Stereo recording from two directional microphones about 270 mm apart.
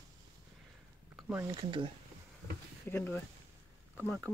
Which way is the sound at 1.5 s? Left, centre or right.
Centre.